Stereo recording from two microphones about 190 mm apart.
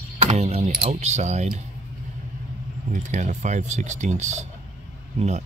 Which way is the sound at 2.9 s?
40° right (ahead or behind).